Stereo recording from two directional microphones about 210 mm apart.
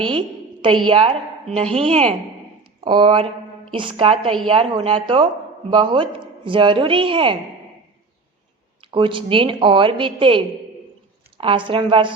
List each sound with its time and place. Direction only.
0.1 s a sound: 25° right (ahead or behind)
0.9 s a woman's voice: 25° right (ahead or behind)
8.8 s speech: 25° right (ahead or behind)